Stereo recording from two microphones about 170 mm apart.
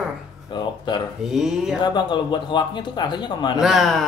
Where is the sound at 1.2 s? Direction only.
5° right (ahead or behind).